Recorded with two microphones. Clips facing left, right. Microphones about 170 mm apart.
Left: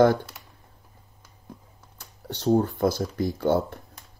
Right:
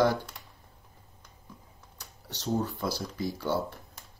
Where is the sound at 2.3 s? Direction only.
55° left (ahead or behind).